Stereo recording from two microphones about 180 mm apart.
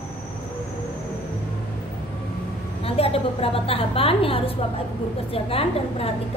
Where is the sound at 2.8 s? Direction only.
35° left (ahead or behind).